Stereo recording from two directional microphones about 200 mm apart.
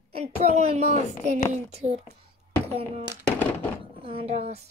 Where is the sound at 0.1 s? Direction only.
30° right (ahead or behind).